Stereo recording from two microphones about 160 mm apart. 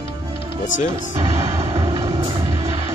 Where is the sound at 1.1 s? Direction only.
40° right (ahead or behind).